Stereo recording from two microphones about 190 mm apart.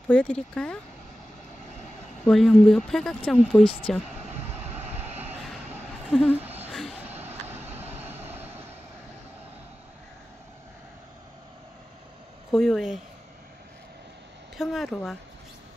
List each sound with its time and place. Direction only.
0.1 s speech: 5° left (ahead or behind)
2.2 s speech: centre (ahead or behind)
6.0 s speech: centre (ahead or behind)
6.3 s a sound: 10° right (ahead or behind)
7.6 s vehicle: 35° right (ahead or behind)
8.0 s vehicle: 10° right (ahead or behind)
12.4 s speech: centre (ahead or behind)
14.6 s speech: centre (ahead or behind)